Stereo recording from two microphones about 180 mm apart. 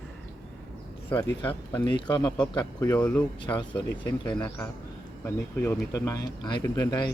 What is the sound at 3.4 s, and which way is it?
Speech, 25° left (ahead or behind).